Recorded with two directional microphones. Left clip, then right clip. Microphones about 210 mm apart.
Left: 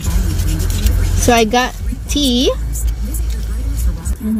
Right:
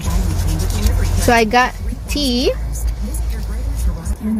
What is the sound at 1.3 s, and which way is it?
Speech, 35° right (ahead or behind).